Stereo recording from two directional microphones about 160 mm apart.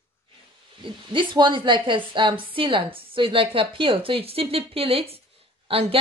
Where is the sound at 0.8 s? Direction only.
30° right (ahead or behind).